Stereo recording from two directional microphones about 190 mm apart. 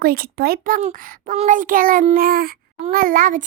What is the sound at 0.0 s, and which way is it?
A child's voice, 50° right (ahead or behind).